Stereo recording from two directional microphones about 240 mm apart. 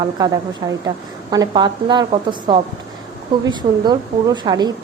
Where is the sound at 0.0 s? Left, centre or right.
Centre.